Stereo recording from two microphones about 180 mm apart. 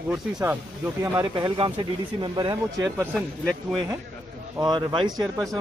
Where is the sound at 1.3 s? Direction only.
25° right (ahead or behind).